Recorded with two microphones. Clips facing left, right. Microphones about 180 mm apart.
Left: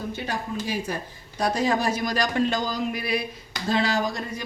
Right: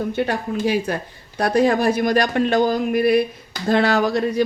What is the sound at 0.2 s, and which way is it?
A woman's voice, 65° right (ahead or behind).